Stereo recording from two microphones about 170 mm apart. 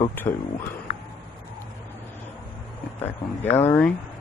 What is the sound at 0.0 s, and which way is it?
Speech, 10° left (ahead or behind).